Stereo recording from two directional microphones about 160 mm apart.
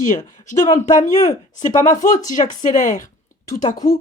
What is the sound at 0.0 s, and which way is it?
Speech, 50° left (ahead or behind).